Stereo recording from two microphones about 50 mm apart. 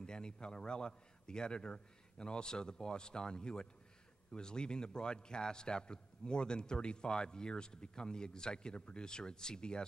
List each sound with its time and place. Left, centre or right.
0.0 s a man's voice: centre